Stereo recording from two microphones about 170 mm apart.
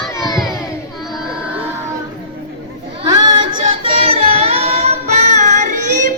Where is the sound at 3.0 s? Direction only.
25° right (ahead or behind).